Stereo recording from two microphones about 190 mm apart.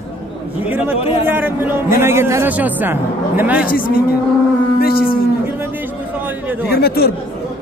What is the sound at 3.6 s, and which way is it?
A man's voice, 50° left (ahead or behind).